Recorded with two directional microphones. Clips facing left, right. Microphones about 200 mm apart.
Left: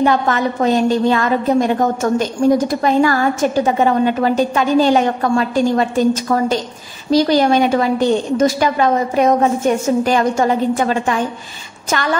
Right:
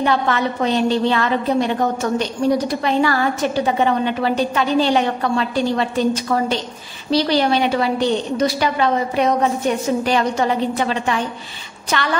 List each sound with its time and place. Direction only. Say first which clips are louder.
0.0 s a woman's voice: left 3 dB; 45° left (ahead or behind)